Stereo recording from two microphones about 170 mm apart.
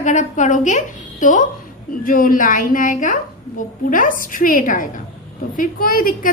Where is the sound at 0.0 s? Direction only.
45° left (ahead or behind).